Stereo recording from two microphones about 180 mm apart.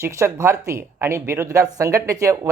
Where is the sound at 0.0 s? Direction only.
15° right (ahead or behind).